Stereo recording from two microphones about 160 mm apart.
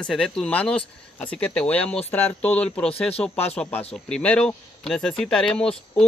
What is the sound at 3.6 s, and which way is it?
Speech, 10° left (ahead or behind).